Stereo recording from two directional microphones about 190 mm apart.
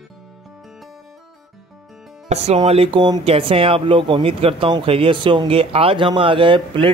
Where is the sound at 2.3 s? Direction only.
30° right (ahead or behind).